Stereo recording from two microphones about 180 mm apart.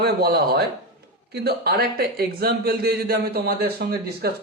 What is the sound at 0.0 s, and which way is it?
Speech, 65° right (ahead or behind).